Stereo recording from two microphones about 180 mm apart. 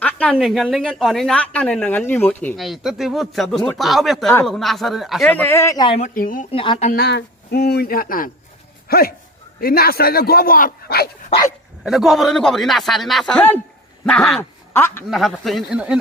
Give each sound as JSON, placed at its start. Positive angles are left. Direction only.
{"t": 0.0, "sound": "a woman's voice", "side_deg": 5}
{"t": 2.6, "sound": "a woman's voice", "side_deg": 0}
{"t": 6.0, "sound": "speech", "side_deg": 50}
{"t": 6.5, "sound": "speech", "side_deg": 30}
{"t": 6.9, "sound": "a man's voice", "side_deg": 65}
{"t": 11.8, "sound": "a woman's voice", "side_deg": 0}
{"t": 15.1, "sound": "a woman's voice", "side_deg": 0}